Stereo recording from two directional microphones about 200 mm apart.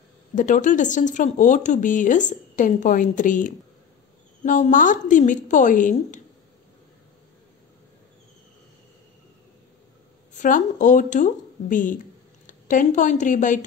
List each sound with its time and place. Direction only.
0.4 s speech: 40° left (ahead or behind)
10.3 s a woman's voice: 40° left (ahead or behind)